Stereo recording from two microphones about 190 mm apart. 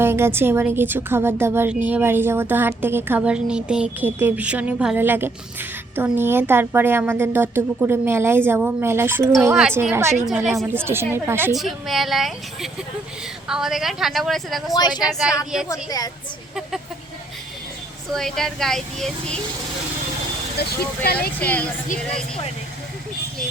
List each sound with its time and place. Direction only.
0.0 s a woman's voice: 10° right (ahead or behind)
11.5 s speech: centre (ahead or behind)
14.7 s speech: 20° left (ahead or behind)
15.0 s speech: 5° right (ahead or behind)
15.7 s speech: 20° left (ahead or behind)
18.1 s speech: centre (ahead or behind)
20.6 s speech: 55° left (ahead or behind)
21.4 s speech: 10° left (ahead or behind)